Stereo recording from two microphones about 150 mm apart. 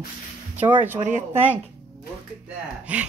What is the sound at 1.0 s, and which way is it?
Speech, 55° right (ahead or behind).